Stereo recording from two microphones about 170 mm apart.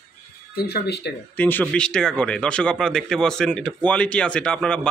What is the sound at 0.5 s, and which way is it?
Speech, 70° left (ahead or behind).